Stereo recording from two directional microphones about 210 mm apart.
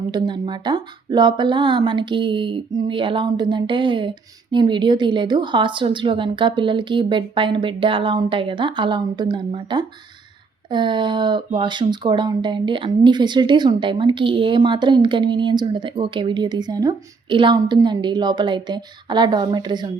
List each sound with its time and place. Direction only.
0.1 s speech: 20° right (ahead or behind)